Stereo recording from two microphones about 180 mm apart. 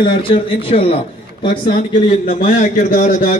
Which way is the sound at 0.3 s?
30° left (ahead or behind).